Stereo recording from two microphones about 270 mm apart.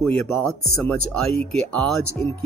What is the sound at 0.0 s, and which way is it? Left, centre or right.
Speech, centre.